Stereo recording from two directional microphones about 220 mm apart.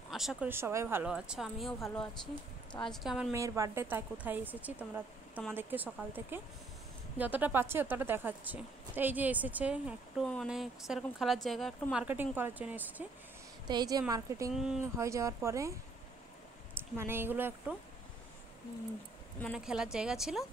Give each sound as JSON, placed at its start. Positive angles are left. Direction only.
{"t": 0.1, "sound": "a woman's voice", "side_deg": 0}
{"t": 3.3, "sound": "a woman's voice", "side_deg": -15}
{"t": 13.7, "sound": "a woman's voice", "side_deg": -20}
{"t": 14.5, "sound": "a woman's voice", "side_deg": 0}
{"t": 15.0, "sound": "a woman's voice", "side_deg": -15}
{"t": 16.7, "sound": "a woman's voice", "side_deg": -10}
{"t": 19.4, "sound": "a woman's voice", "side_deg": -5}